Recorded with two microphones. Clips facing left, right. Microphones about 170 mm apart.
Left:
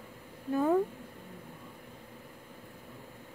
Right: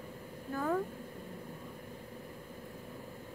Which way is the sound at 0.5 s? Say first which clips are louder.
Left 7 dB; 20° left (ahead or behind).